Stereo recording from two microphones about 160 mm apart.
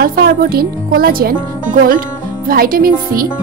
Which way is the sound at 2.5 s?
65° right (ahead or behind).